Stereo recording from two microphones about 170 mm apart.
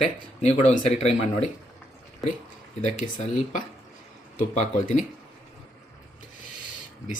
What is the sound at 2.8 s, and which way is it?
Speech, 50° left (ahead or behind).